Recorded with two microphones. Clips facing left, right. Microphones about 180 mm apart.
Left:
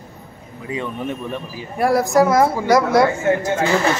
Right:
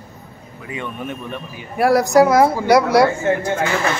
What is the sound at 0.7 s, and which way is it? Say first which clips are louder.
A man's voice: left 3 dB; 30° left (ahead or behind).